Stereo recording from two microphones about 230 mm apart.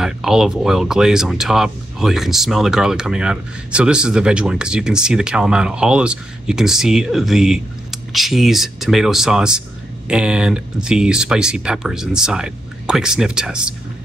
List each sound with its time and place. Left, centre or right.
0.0 s speech: centre